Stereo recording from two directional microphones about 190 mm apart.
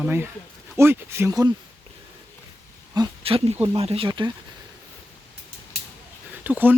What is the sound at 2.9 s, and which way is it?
Speech, 25° right (ahead or behind).